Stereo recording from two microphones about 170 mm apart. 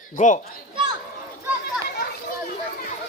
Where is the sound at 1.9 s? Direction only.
65° left (ahead or behind).